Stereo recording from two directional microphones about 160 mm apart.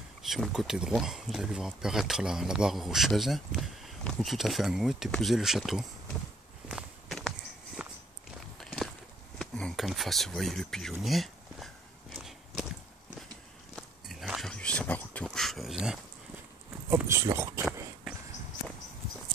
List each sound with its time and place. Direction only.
0.2 s speech: centre (ahead or behind)
6.7 s walk: centre (ahead or behind)
9.4 s a sound: 5° left (ahead or behind)
13.7 s biting: centre (ahead or behind)
16.9 s speech: 15° right (ahead or behind)